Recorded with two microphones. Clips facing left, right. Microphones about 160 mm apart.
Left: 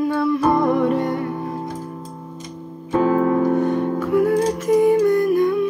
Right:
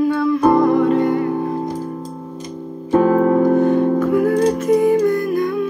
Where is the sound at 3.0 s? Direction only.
45° right (ahead or behind).